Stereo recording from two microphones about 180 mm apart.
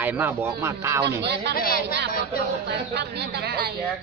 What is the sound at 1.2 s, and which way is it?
Speech, 70° right (ahead or behind).